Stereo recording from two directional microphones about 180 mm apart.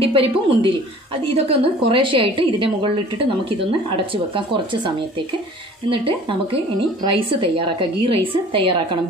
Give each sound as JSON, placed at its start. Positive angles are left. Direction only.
{"t": 0.0, "sound": "a woman's voice", "side_deg": -30}
{"t": 7.1, "sound": "a woman's voice", "side_deg": -30}